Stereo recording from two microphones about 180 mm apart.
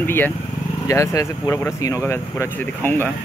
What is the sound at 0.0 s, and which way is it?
Speech, 10° left (ahead or behind).